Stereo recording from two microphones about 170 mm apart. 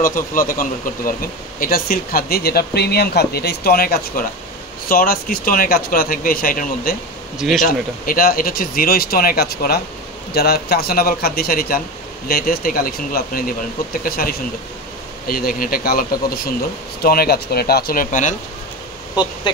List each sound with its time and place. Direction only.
0.0 s speech: 55° left (ahead or behind)
7.3 s speech: centre (ahead or behind)
7.6 s speech: 55° left (ahead or behind)
19.5 s speech: 25° left (ahead or behind)